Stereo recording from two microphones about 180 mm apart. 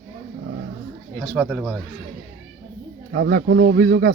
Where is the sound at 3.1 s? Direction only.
60° right (ahead or behind).